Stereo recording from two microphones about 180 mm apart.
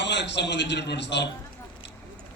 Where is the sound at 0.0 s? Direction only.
75° left (ahead or behind).